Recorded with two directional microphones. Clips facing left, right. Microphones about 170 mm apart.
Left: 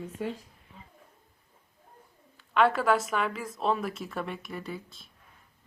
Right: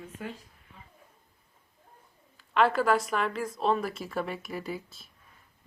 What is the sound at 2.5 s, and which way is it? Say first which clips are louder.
A woman's voice: even; centre (ahead or behind).